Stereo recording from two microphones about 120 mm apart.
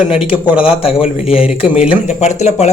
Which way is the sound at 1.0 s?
55° left (ahead or behind).